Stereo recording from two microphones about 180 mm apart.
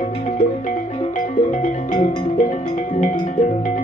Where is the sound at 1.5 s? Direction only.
45° left (ahead or behind).